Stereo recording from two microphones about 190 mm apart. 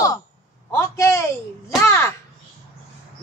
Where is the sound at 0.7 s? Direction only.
15° left (ahead or behind).